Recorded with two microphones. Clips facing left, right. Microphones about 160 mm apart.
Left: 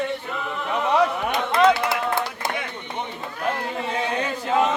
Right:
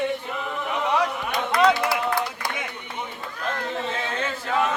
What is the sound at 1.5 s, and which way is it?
Run, 25° left (ahead or behind).